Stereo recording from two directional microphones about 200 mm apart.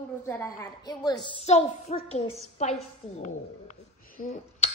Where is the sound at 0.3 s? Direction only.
15° left (ahead or behind).